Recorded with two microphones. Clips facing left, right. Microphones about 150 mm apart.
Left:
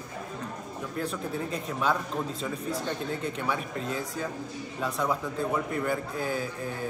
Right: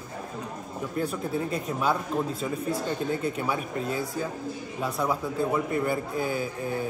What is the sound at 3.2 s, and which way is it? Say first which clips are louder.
Speech: right 2 dB; 5° right (ahead or behind).